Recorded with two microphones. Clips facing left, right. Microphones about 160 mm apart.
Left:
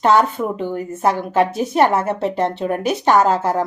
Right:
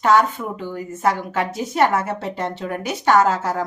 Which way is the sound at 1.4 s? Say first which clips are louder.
Left 7 dB; 25° left (ahead or behind).